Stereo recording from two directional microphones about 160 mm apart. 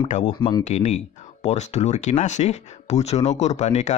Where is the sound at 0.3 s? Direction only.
25° left (ahead or behind).